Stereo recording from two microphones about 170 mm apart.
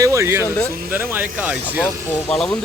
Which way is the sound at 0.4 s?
15° left (ahead or behind).